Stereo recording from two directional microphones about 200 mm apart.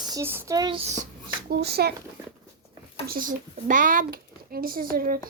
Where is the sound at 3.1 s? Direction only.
45° right (ahead or behind).